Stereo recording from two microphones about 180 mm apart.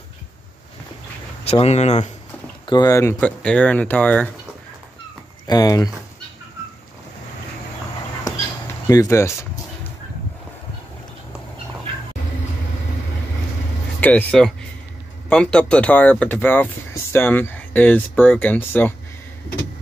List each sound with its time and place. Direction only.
1.4 s speech: 35° left (ahead or behind)
2.6 s speech: 25° left (ahead or behind); by 4.3 s 10° left (ahead or behind)
5.5 s speech: 20° left (ahead or behind)
8.8 s speech: 15° left (ahead or behind)
14.0 s speech: 5° left (ahead or behind)